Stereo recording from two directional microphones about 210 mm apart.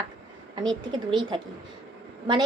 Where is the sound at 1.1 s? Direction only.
20° right (ahead or behind).